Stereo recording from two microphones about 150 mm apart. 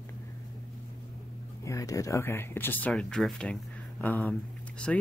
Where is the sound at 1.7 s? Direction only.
20° left (ahead or behind).